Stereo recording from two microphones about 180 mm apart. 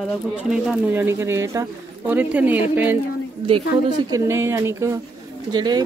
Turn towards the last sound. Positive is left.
turn(degrees=-25)  # may be behind; listen again after turning